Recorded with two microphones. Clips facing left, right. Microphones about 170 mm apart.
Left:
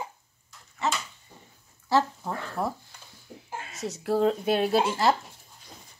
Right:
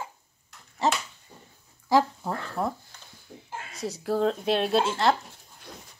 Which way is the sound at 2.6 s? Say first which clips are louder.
Right 1 dB; centre (ahead or behind).